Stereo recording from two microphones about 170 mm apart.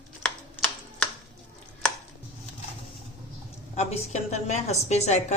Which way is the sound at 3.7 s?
40° left (ahead or behind).